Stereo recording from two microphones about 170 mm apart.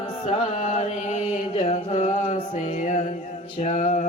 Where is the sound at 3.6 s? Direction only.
45° left (ahead or behind).